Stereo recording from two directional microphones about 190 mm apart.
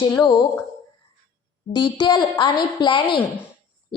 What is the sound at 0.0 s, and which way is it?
Speech, 20° left (ahead or behind).